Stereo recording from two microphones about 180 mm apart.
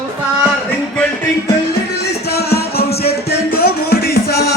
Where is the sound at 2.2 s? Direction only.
65° left (ahead or behind).